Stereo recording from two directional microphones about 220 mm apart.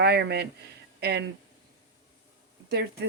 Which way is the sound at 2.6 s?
45° right (ahead or behind).